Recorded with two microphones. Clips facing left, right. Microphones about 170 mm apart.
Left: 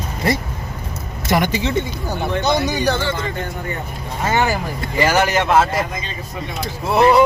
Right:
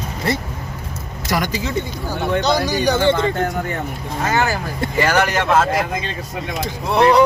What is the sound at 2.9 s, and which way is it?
Speech, 15° right (ahead or behind).